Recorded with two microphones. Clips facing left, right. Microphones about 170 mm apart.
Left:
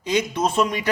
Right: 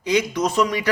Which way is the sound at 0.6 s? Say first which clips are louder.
Right 2 dB; 25° left (ahead or behind).